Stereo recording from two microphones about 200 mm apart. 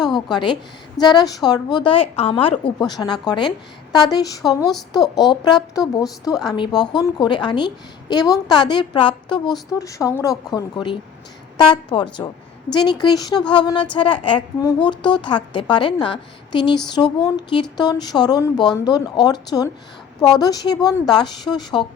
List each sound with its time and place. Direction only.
0.0 s a woman's voice: 20° left (ahead or behind)
4.6 s speech: centre (ahead or behind)
5.1 s a woman's voice: 20° left (ahead or behind)